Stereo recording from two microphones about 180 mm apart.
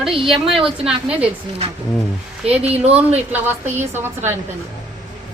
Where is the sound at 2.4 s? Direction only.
35° right (ahead or behind).